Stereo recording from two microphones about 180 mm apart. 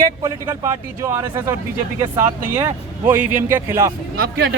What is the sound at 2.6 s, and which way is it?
A man's voice, 15° right (ahead or behind).